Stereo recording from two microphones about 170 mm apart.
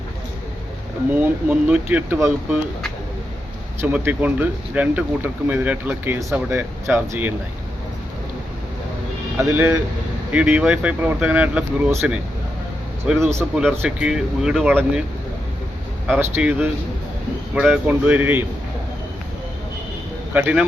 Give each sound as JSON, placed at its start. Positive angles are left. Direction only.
{"t": 1.2, "sound": "speech", "side_deg": -10}
{"t": 3.8, "sound": "speech", "side_deg": -10}
{"t": 9.4, "sound": "speech", "side_deg": -15}
{"t": 13.1, "sound": "speech", "side_deg": 0}
{"t": 16.0, "sound": "speech", "side_deg": -10}
{"t": 20.3, "sound": "speech", "side_deg": -5}